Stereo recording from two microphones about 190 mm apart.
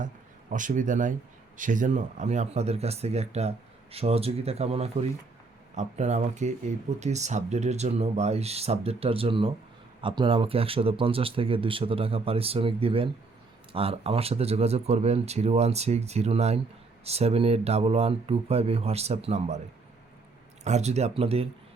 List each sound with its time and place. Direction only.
0.5 s speech: 45° right (ahead or behind)
20.7 s speech: 35° right (ahead or behind)